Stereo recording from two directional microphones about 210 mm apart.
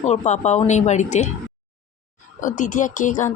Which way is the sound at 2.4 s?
35° left (ahead or behind).